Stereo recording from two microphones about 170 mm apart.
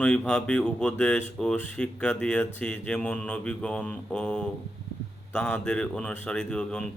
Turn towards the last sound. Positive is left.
turn(degrees=5)  # may be behind; listen again after turning